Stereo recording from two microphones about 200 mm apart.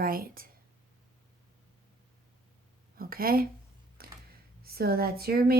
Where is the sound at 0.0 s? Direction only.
45° right (ahead or behind).